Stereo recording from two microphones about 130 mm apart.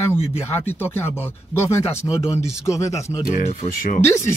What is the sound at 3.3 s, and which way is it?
Speech, 60° left (ahead or behind).